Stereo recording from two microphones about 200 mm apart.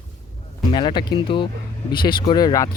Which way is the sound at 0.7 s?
25° left (ahead or behind).